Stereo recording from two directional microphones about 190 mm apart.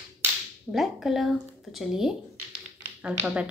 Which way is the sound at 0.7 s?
Centre (ahead or behind).